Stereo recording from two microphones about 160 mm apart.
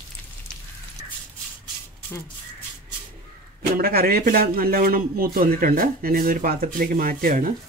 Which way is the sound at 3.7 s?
65° right (ahead or behind).